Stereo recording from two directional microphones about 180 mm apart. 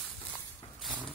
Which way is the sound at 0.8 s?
5° right (ahead or behind).